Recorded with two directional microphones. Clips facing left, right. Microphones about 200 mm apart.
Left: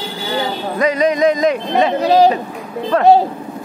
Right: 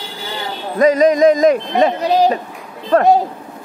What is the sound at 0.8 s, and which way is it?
A man's voice, 45° right (ahead or behind).